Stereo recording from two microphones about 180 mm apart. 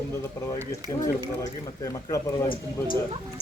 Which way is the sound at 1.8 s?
20° left (ahead or behind).